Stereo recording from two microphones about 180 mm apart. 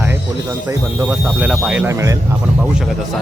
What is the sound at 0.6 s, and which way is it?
Speech, 15° right (ahead or behind).